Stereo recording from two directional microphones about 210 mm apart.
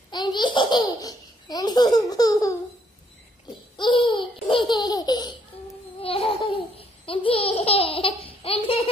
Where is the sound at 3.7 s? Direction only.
20° left (ahead or behind).